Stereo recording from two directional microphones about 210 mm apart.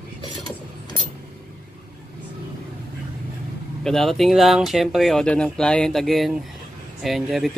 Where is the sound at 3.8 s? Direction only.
Centre (ahead or behind).